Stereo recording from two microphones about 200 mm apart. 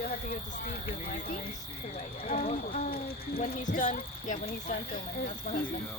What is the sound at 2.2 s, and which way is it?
Speech, 40° left (ahead or behind).